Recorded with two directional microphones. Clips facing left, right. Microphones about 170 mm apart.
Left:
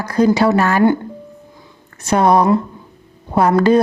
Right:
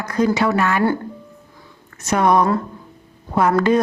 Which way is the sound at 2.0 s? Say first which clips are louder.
Left 3 dB; 30° left (ahead or behind).